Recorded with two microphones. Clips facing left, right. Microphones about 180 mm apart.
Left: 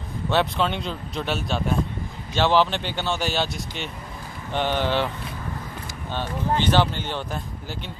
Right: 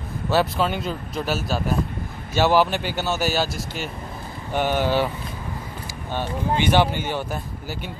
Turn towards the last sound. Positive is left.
turn(degrees=-10)  # may be behind; listen again after turning